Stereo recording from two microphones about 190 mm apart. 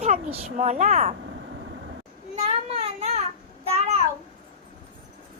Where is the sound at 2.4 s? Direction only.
35° right (ahead or behind).